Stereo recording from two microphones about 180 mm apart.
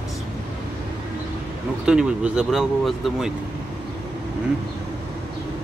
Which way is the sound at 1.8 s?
5° right (ahead or behind).